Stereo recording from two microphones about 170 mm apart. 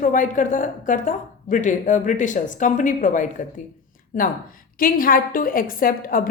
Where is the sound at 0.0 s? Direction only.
50° left (ahead or behind).